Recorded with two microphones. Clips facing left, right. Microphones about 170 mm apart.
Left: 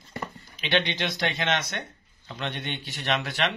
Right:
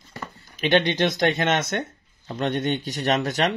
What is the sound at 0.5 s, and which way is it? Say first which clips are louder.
Speech: right 7 dB; 45° right (ahead or behind).